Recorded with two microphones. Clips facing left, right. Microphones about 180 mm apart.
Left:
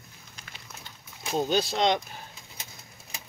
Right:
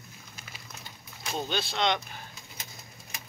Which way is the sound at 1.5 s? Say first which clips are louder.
Left 4 dB; 40° left (ahead or behind).